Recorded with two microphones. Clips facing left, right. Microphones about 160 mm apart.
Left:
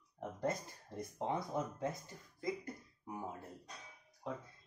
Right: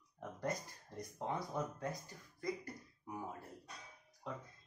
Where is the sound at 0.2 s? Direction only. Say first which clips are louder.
Left 3 dB; 25° left (ahead or behind).